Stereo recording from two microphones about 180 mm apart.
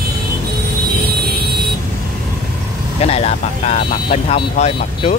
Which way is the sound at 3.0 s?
35° left (ahead or behind).